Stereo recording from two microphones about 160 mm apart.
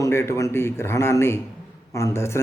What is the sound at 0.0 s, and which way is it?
A man's voice, 15° left (ahead or behind).